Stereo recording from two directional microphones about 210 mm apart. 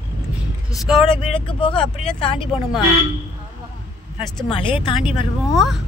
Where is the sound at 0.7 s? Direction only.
Centre (ahead or behind).